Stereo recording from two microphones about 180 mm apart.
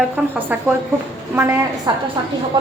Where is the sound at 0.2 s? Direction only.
5° right (ahead or behind).